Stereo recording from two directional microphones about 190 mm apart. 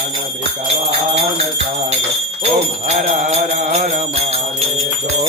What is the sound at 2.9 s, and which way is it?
Music, 35° right (ahead or behind).